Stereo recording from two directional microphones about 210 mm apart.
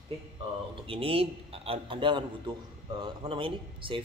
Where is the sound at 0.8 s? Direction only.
25° right (ahead or behind).